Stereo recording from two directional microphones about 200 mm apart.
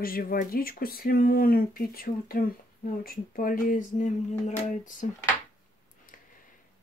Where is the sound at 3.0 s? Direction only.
45° left (ahead or behind).